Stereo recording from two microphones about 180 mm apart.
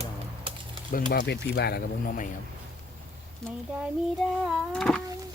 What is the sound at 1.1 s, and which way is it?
Speech, 65° left (ahead or behind).